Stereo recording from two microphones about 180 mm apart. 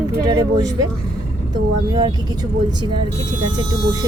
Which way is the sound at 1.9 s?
25° right (ahead or behind).